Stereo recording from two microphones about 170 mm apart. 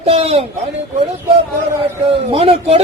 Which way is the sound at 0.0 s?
35° right (ahead or behind).